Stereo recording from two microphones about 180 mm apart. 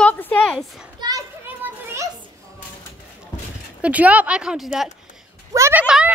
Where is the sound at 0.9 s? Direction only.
20° right (ahead or behind).